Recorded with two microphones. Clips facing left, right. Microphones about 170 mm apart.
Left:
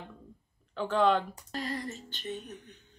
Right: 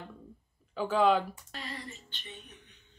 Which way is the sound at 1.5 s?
40° left (ahead or behind).